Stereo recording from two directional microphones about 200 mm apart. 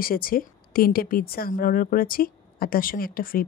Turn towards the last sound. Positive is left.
turn(degrees=45)  # may be behind; listen again after turning